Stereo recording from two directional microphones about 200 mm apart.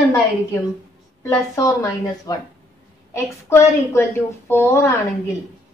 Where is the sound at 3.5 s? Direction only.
15° left (ahead or behind).